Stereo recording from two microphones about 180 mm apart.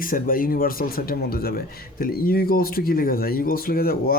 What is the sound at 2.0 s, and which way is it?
Speech, 55° left (ahead or behind).